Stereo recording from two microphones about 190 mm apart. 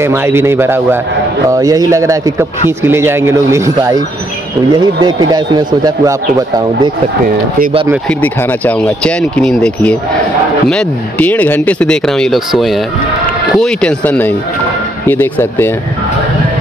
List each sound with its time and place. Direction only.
0.0 s a man's voice: 15° right (ahead or behind)
7.2 s speech: 50° right (ahead or behind)
8.1 s speech: 10° left (ahead or behind)